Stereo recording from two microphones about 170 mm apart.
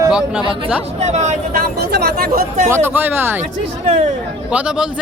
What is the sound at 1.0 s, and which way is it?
Speech, 40° right (ahead or behind).